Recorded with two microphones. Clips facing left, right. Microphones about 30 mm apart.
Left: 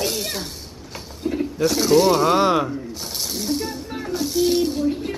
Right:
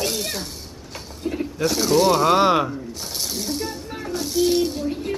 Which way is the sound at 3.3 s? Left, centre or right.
Centre.